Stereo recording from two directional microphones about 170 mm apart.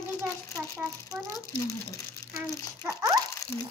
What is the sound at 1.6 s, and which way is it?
Speech, 20° left (ahead or behind).